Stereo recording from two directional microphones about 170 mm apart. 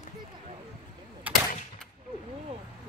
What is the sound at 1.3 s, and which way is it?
Gunshot, 10° right (ahead or behind).